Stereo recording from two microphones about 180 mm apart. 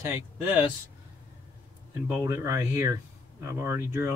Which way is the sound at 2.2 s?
15° right (ahead or behind).